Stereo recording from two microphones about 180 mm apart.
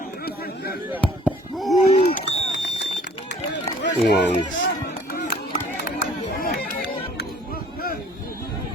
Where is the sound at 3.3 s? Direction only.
75° left (ahead or behind).